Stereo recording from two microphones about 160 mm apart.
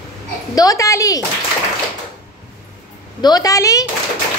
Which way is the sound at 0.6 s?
20° left (ahead or behind).